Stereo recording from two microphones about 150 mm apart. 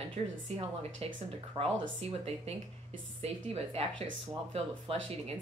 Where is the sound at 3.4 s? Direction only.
45° right (ahead or behind).